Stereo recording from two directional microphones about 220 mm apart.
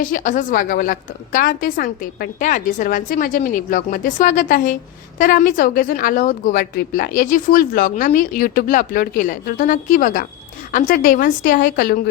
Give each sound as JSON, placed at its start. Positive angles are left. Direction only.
{"t": 0.0, "sound": "a woman's voice", "side_deg": 35}